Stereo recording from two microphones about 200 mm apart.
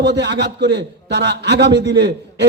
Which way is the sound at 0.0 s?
60° right (ahead or behind).